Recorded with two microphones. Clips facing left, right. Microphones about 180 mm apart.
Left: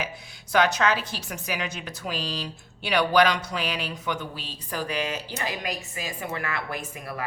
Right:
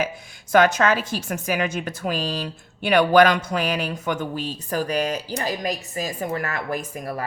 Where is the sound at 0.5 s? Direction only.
50° right (ahead or behind).